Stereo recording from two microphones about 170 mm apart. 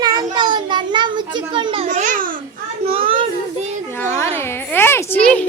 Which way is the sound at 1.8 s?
45° right (ahead or behind).